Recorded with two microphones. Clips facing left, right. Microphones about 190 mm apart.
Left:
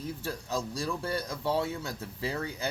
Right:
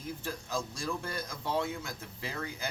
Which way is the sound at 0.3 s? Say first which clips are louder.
Left 3 dB; 35° left (ahead or behind).